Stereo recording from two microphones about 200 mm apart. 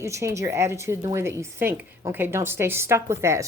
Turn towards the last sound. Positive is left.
turn(degrees=-15)  # may be behind; listen again after turning